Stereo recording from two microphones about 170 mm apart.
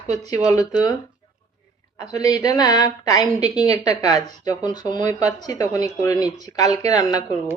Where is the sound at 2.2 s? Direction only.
20° left (ahead or behind).